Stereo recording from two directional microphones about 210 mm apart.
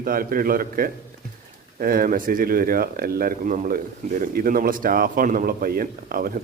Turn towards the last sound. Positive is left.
turn(degrees=-45)  # may be behind; listen again after turning